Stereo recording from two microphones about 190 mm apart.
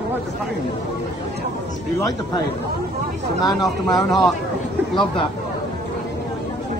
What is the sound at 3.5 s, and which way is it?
Speech, centre (ahead or behind).